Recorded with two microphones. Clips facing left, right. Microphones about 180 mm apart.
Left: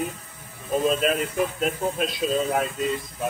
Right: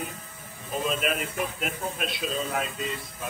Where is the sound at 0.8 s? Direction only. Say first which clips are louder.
Left 5 dB; 35° left (ahead or behind).